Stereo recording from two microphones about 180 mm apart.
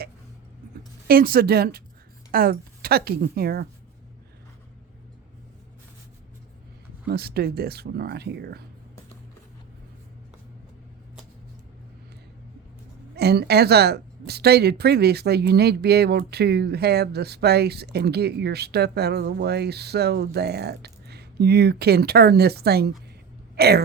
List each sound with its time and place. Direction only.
1.0 s a woman's voice: 55° right (ahead or behind)
7.1 s a woman's voice: 60° right (ahead or behind)
13.1 s a woman's voice: 65° right (ahead or behind)